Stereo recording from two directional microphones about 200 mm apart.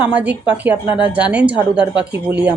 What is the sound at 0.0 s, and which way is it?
A woman's voice, 5° right (ahead or behind).